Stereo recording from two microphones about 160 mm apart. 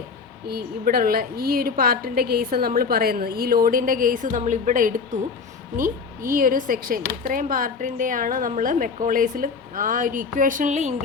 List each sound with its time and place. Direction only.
0.4 s speech: 70° right (ahead or behind); by 10.9 s 50° right (ahead or behind)